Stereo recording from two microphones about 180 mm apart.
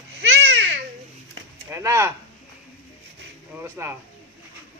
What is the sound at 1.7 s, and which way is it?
Speech, 15° right (ahead or behind).